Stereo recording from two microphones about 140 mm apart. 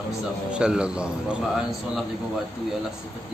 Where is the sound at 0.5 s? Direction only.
5° right (ahead or behind).